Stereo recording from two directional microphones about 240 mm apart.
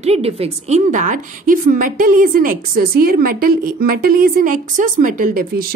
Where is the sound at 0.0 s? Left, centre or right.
Right.